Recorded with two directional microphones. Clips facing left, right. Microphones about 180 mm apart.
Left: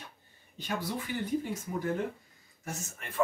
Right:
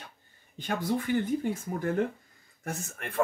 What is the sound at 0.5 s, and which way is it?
Speech, 50° right (ahead or behind).